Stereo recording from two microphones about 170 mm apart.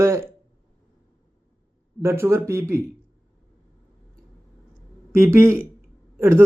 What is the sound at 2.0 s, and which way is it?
Speech, 15° right (ahead or behind).